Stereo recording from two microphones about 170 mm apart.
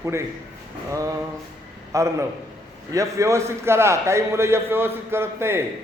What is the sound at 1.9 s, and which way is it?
A man's voice, 15° right (ahead or behind).